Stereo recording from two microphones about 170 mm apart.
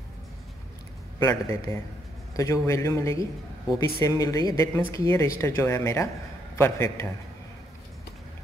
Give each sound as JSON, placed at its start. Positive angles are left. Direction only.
{"t": 1.2, "sound": "a man's voice", "side_deg": 15}